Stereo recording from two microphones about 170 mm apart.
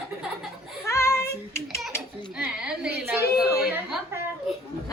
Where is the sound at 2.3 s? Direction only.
5° right (ahead or behind).